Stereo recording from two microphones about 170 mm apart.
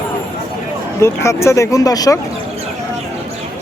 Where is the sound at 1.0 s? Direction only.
15° left (ahead or behind).